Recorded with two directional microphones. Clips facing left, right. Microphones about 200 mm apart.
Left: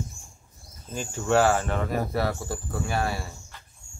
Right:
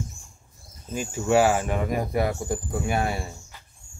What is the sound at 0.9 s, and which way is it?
Speech, 10° right (ahead or behind).